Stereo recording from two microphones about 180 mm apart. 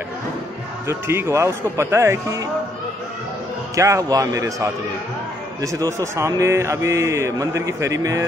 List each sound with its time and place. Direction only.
0.8 s a man's voice: 15° right (ahead or behind)
3.7 s a man's voice: 15° right (ahead or behind)